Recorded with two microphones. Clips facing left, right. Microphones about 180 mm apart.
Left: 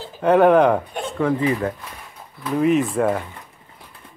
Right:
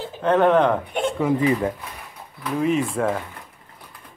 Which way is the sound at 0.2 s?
10° left (ahead or behind).